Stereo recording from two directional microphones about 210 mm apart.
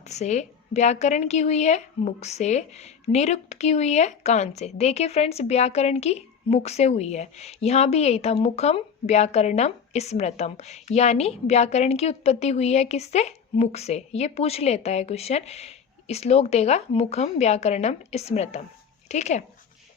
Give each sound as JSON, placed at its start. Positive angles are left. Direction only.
{"t": 0.0, "sound": "a woman's voice", "side_deg": 35}